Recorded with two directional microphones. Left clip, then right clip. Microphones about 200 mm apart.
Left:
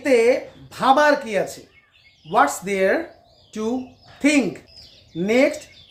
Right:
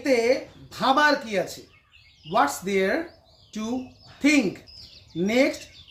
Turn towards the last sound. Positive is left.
turn(degrees=15)  # may be behind; listen again after turning